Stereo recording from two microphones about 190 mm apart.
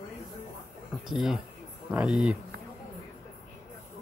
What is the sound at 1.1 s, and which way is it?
A man's voice, centre (ahead or behind).